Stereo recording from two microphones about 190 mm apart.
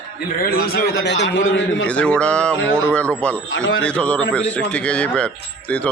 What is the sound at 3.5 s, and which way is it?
Speech, 90° left.